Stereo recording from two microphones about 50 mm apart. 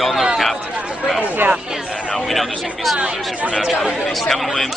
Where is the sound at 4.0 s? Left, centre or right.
Centre.